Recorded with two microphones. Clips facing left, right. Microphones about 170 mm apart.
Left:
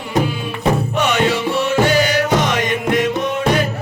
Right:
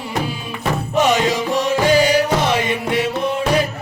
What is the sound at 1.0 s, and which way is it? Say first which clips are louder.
Music: right 5 dB; 35° right (ahead or behind).